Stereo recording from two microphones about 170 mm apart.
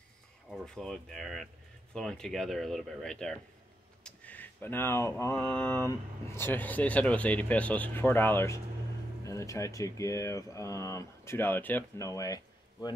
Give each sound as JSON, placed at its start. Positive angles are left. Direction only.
{"t": 0.5, "sound": "speech", "side_deg": 0}
{"t": 4.0, "sound": "mantra", "side_deg": 10}
{"t": 9.2, "sound": "speech", "side_deg": 20}